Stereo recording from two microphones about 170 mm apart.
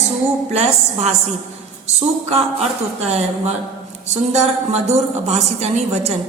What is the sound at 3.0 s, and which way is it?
A woman's voice, 40° right (ahead or behind).